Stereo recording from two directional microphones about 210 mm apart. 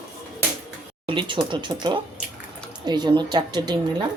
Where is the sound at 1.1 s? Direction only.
25° right (ahead or behind).